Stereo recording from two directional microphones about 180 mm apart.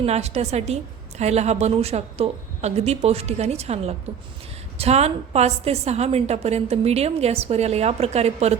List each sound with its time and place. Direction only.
0.0 s a woman's voice: 35° right (ahead or behind)